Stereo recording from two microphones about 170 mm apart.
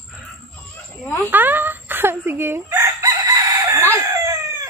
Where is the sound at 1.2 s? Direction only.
10° right (ahead or behind).